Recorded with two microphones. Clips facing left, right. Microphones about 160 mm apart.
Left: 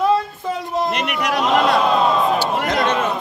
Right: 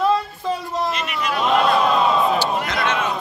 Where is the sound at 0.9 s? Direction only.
70° left (ahead or behind).